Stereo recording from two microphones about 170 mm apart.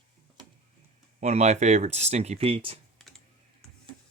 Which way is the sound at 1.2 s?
40° right (ahead or behind).